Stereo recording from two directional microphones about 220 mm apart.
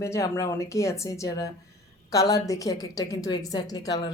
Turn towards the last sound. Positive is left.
turn(degrees=15)  # may be behind; listen again after turning